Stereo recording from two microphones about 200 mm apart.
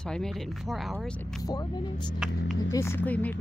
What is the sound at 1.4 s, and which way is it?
Speech, 20° left (ahead or behind).